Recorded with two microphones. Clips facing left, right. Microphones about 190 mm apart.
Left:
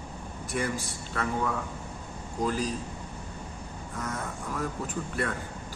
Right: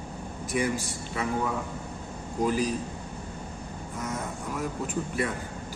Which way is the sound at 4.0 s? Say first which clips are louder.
Right 1 dB; 15° right (ahead or behind).